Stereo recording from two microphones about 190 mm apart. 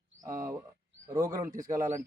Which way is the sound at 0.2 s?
15° right (ahead or behind).